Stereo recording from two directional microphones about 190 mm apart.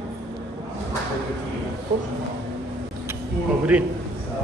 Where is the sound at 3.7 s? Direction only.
5° right (ahead or behind).